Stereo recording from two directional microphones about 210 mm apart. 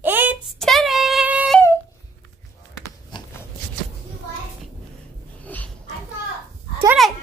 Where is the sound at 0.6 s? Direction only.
Centre (ahead or behind).